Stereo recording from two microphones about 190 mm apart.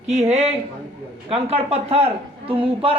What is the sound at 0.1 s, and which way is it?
A man's voice, 35° right (ahead or behind).